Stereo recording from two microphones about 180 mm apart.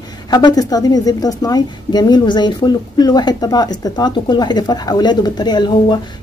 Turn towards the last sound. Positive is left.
turn(degrees=25)  # may be behind; listen again after turning